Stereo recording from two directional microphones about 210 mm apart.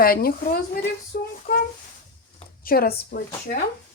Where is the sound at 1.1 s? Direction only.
45° left (ahead or behind).